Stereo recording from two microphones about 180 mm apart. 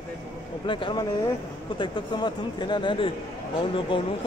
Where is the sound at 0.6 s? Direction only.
25° left (ahead or behind).